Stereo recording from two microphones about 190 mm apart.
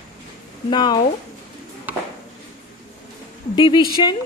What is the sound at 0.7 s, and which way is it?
Speech, 25° left (ahead or behind).